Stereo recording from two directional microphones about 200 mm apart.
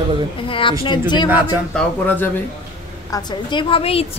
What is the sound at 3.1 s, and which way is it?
Speech, 25° left (ahead or behind).